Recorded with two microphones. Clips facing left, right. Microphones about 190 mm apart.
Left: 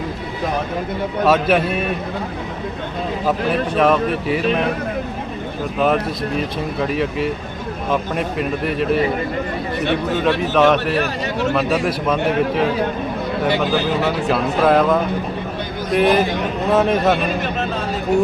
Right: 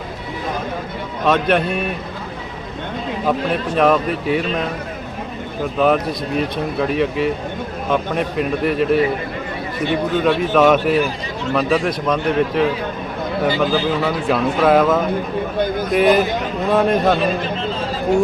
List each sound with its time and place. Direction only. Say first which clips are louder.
1.2 s speech: left 1 dB; 5° left (ahead or behind)
3.2 s speech: even; centre (ahead or behind)
5.8 s speech: right 1 dB; centre (ahead or behind)
10.5 s speech: right 2 dB; centre (ahead or behind)
10.9 s a man's voice: right 1 dB; 70° left (ahead or behind)
11.5 s speech: right 5 dB; 5° left (ahead or behind)